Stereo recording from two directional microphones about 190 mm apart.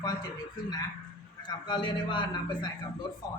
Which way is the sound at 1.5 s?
25° left (ahead or behind).